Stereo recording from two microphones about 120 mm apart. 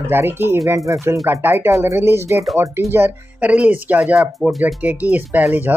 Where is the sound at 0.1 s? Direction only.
20° right (ahead or behind); by 4.7 s centre (ahead or behind).